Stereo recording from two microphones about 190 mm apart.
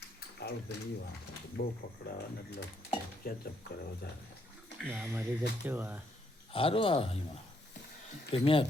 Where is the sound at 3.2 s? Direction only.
50° left (ahead or behind).